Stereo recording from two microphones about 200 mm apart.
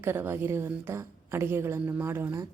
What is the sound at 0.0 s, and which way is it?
A woman's voice, 10° right (ahead or behind).